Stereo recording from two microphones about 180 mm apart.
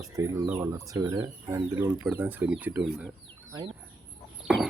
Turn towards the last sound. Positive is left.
turn(degrees=-5)  # may be behind; listen again after turning